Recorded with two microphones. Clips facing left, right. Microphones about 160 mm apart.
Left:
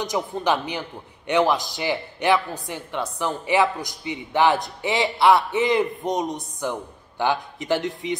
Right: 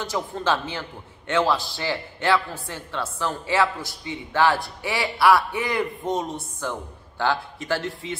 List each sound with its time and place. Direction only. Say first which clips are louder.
0.0 s a man's voice: left 2 dB; 15° left (ahead or behind)